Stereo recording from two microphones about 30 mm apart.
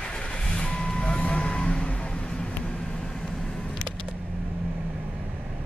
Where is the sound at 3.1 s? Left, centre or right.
Centre.